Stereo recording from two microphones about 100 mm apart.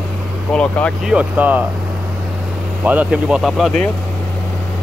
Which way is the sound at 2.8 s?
15° right (ahead or behind).